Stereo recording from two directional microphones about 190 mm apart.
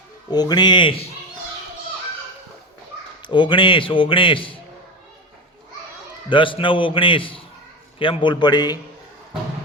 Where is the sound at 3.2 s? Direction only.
25° left (ahead or behind).